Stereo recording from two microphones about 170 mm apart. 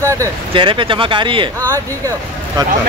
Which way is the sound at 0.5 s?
30° right (ahead or behind).